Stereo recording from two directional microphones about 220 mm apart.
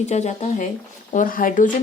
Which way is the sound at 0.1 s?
30° left (ahead or behind).